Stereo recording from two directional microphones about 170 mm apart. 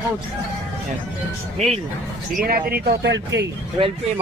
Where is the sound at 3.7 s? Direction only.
30° right (ahead or behind).